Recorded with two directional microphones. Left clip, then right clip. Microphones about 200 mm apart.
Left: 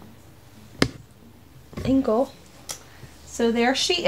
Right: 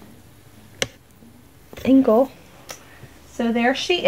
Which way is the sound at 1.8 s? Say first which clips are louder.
Right 6 dB; 45° right (ahead or behind).